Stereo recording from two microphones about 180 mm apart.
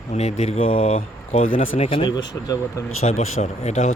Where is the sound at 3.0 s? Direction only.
40° left (ahead or behind).